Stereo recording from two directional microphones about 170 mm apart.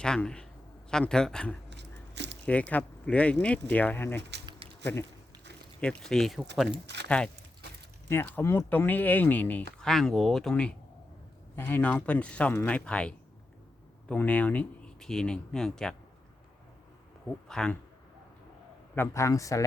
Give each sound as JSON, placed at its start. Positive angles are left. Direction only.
{"t": 0.0, "sound": "speech", "side_deg": 5}
{"t": 1.7, "sound": "a sound", "side_deg": -90}
{"t": 2.5, "sound": "speech", "side_deg": 10}
{"t": 4.2, "sound": "speech", "side_deg": -85}
{"t": 5.8, "sound": "speech", "side_deg": 5}
{"t": 6.8, "sound": "a sound", "side_deg": -90}
{"t": 8.1, "sound": "speech", "side_deg": 15}
{"t": 17.5, "sound": "speech", "side_deg": 5}
{"t": 18.9, "sound": "a man's voice", "side_deg": 15}